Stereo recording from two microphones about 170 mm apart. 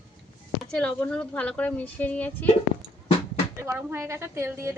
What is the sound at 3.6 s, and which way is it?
A woman's voice, 15° right (ahead or behind).